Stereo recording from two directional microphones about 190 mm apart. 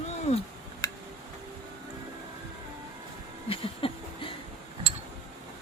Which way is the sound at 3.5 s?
30° left (ahead or behind).